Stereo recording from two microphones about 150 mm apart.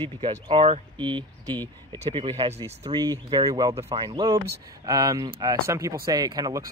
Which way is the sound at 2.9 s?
30° right (ahead or behind).